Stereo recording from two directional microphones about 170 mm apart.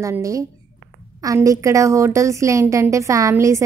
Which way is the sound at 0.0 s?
20° right (ahead or behind).